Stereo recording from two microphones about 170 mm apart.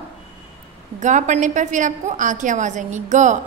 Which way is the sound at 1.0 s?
45° right (ahead or behind).